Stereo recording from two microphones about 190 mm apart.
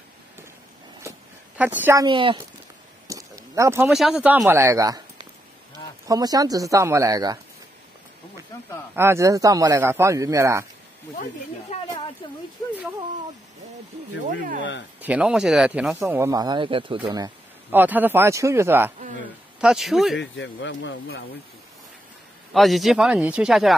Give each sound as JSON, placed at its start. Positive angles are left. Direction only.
{"t": 1.6, "sound": "speech", "side_deg": -10}
{"t": 2.0, "sound": "speech", "side_deg": -25}
{"t": 3.1, "sound": "a sound", "side_deg": -15}
{"t": 3.9, "sound": "speech", "side_deg": -5}
{"t": 6.0, "sound": "speech", "side_deg": -20}
{"t": 8.9, "sound": "speech", "side_deg": -15}
{"t": 11.7, "sound": "a sound", "side_deg": 35}
{"t": 15.0, "sound": "speech", "side_deg": -5}
{"t": 17.6, "sound": "a man's voice", "side_deg": -10}
{"t": 20.2, "sound": "speech", "side_deg": 70}
{"t": 22.5, "sound": "a man's voice", "side_deg": 0}